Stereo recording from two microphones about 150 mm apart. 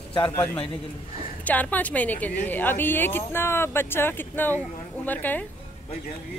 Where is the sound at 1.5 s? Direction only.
10° left (ahead or behind).